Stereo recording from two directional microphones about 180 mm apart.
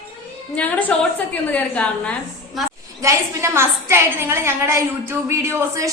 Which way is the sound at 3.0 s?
15° right (ahead or behind).